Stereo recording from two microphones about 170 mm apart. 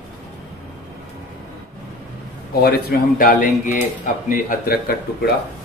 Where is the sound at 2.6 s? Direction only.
65° left (ahead or behind).